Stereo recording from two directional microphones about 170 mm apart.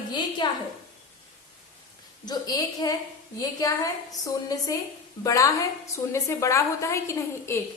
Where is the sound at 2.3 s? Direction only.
25° left (ahead or behind).